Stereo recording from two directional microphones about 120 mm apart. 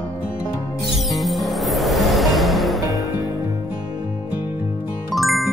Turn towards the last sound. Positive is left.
turn(degrees=0)  # may be behind; listen again after turning